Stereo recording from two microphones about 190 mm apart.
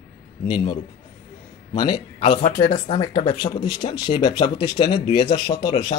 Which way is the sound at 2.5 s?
50° left (ahead or behind).